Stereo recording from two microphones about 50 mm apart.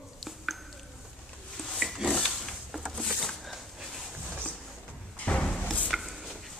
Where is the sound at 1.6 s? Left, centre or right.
Centre.